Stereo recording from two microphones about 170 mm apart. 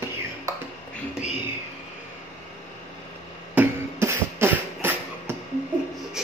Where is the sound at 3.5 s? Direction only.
15° right (ahead or behind).